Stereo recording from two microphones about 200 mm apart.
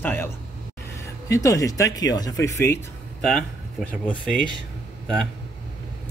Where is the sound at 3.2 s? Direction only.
5° left (ahead or behind).